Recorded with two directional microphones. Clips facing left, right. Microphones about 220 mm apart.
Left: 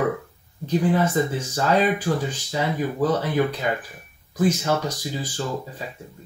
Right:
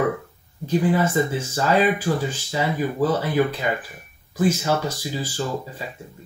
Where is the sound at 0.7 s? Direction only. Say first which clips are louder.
Right 1 dB; 5° right (ahead or behind).